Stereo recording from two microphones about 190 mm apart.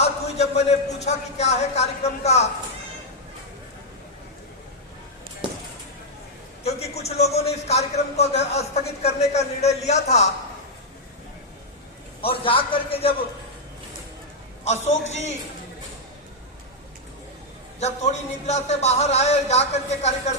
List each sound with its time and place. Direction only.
0.0 s speech: 35° left (ahead or behind)
6.9 s speech: 35° left (ahead or behind)
12.2 s a man's voice: 30° left (ahead or behind)
14.6 s speech: 35° left (ahead or behind)
17.7 s speech: 35° left (ahead or behind)